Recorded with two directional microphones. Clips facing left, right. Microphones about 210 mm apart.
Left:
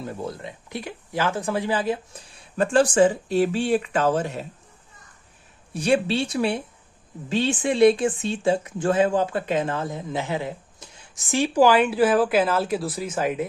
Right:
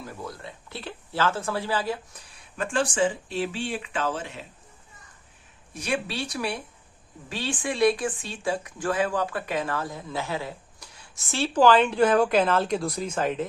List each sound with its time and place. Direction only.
0.0 s speech: 25° left (ahead or behind)
2.6 s speech: 40° left (ahead or behind)
5.7 s speech: 30° left (ahead or behind); by 13.5 s 10° left (ahead or behind)